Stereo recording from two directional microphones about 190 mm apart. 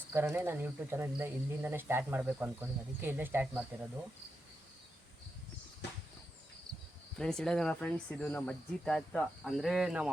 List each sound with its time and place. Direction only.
0.1 s speech: 15° right (ahead or behind)
6.7 s cricket: 20° right (ahead or behind)
7.2 s speech: 5° left (ahead or behind)